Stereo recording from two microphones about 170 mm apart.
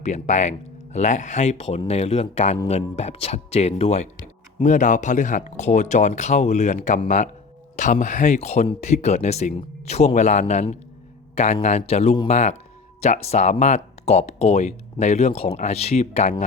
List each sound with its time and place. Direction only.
0.0 s speech: 45° left (ahead or behind)
12.3 s speech: 40° left (ahead or behind)